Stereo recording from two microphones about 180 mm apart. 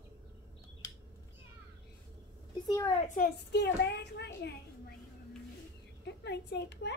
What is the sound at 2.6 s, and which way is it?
Speech, 25° left (ahead or behind).